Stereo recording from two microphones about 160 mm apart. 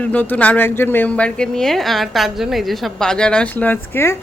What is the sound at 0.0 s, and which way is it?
A woman's voice, 10° left (ahead or behind).